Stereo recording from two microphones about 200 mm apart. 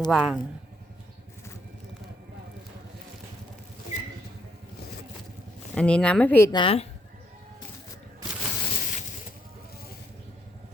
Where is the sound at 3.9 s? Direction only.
35° left (ahead or behind).